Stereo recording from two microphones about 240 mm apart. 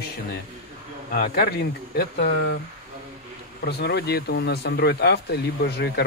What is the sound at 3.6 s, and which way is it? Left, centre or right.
Speech, left.